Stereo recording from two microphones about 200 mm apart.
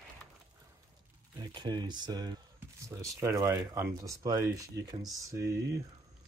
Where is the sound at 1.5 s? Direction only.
20° right (ahead or behind).